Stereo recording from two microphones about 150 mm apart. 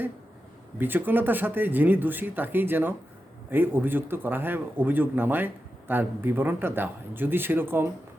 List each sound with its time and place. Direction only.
0.8 s speech: 10° right (ahead or behind)